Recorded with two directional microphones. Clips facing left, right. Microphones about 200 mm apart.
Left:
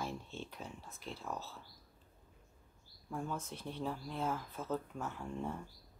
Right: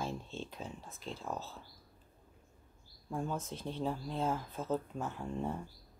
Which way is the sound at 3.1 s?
20° right (ahead or behind).